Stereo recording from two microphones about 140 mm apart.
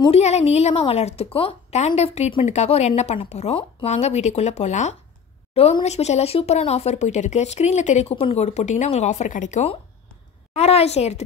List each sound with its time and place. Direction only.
0.1 s speech: 50° left (ahead or behind)